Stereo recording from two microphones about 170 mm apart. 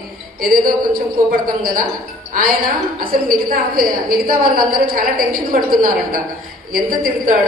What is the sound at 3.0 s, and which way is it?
A woman's voice, 55° right (ahead or behind).